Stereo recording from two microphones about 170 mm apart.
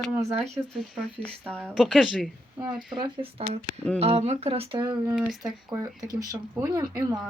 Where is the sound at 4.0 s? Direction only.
35° right (ahead or behind).